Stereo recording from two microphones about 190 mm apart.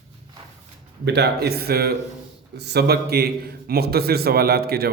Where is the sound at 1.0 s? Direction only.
65° right (ahead or behind).